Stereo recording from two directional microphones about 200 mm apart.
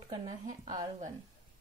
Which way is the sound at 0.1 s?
20° right (ahead or behind).